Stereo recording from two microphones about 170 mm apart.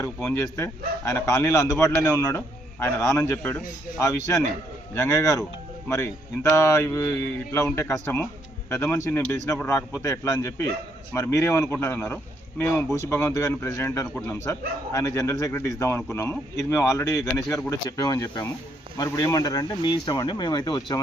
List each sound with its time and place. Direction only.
0.0 s speech: 15° left (ahead or behind)